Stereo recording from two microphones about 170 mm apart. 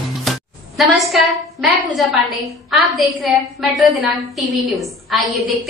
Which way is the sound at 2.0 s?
Centre (ahead or behind).